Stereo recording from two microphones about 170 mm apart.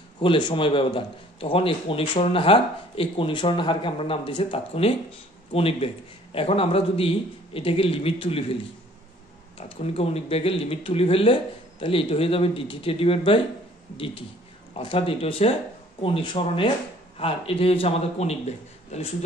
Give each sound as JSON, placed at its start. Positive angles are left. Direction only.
{"t": 0.2, "sound": "a man's voice", "side_deg": 30}
{"t": 9.6, "sound": "a man's voice", "side_deg": 35}